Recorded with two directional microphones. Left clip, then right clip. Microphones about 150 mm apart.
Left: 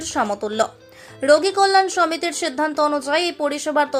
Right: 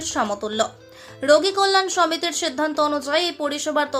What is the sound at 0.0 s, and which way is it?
A woman's voice, 15° left (ahead or behind).